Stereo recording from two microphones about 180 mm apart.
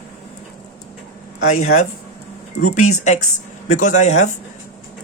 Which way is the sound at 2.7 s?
40° left (ahead or behind).